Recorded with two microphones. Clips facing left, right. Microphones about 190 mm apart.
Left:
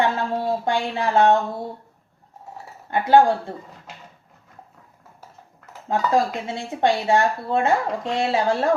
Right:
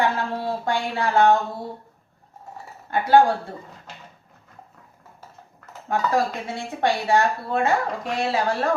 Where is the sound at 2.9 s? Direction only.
20° left (ahead or behind).